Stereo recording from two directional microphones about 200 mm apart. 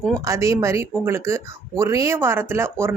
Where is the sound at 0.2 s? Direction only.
15° right (ahead or behind).